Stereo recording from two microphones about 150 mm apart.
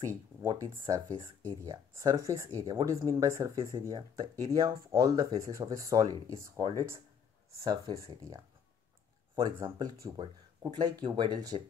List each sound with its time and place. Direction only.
0.4 s speech: 25° right (ahead or behind)